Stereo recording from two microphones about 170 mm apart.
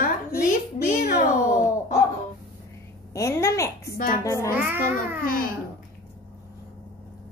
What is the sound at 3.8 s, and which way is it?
Speech, 60° left (ahead or behind).